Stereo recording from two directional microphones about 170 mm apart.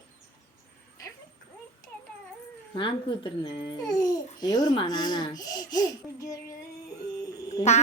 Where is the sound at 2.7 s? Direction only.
30° left (ahead or behind).